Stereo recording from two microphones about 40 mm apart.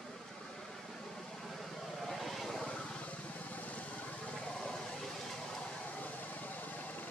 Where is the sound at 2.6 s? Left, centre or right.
Left.